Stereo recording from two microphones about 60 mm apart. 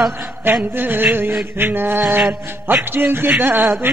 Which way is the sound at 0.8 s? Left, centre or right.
Right.